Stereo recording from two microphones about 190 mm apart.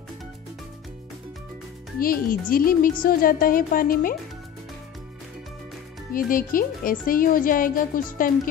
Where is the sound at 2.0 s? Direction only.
50° left (ahead or behind).